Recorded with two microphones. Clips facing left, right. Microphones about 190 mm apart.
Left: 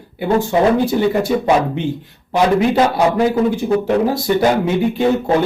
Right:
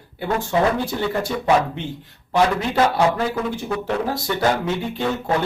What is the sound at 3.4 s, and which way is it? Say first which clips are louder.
Speech: left 9 dB; 35° left (ahead or behind).